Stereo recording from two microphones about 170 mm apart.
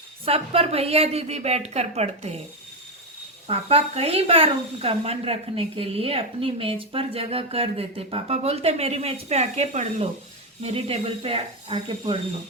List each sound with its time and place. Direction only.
0.3 s speech: 35° right (ahead or behind)
3.4 s speech: 35° right (ahead or behind)